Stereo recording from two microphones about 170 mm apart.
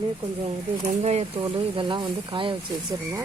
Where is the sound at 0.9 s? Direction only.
40° right (ahead or behind).